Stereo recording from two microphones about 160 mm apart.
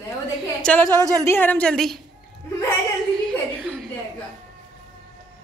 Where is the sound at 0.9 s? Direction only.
20° right (ahead or behind).